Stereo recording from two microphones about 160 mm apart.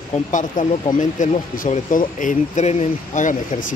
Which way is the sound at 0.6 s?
55° left (ahead or behind).